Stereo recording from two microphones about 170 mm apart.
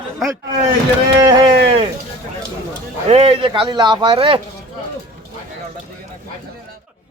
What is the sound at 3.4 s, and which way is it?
Speech, 25° right (ahead or behind).